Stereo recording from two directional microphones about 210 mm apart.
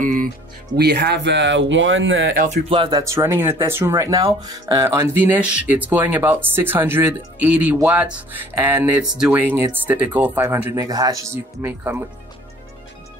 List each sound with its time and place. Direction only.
0.0 s music: 40° right (ahead or behind)
0.7 s speech: 50° right (ahead or behind)
2.5 s speech: 25° right (ahead or behind)
3.0 s speech: 15° right (ahead or behind)